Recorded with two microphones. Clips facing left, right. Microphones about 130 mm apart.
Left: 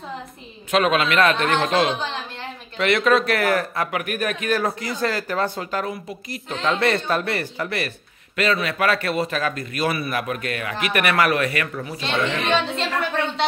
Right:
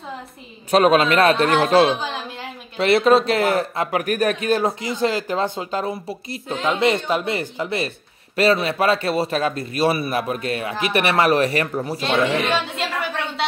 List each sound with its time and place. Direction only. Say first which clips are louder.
0.7 s a man's voice: right 4 dB; 35° right (ahead or behind)
4.0 s speech: right 5 dB; 35° right (ahead or behind)
6.5 s a man's voice: right 2 dB; 15° right (ahead or behind); by 12.0 s 35° right (ahead or behind)
12.0 s speech: right 4 dB; 5° right (ahead or behind)